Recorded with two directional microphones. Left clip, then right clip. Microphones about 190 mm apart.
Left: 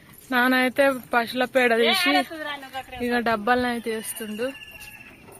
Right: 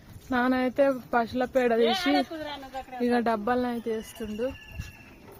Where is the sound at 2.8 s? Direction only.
35° right (ahead or behind).